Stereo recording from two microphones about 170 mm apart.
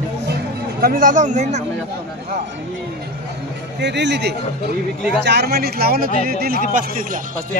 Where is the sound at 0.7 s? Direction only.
60° right (ahead or behind).